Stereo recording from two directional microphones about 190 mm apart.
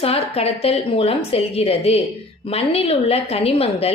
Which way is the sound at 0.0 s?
30° left (ahead or behind).